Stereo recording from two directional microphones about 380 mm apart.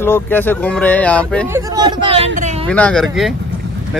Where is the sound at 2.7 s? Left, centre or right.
Centre.